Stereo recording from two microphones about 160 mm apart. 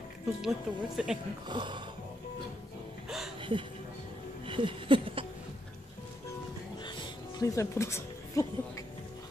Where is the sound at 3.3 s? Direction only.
30° right (ahead or behind).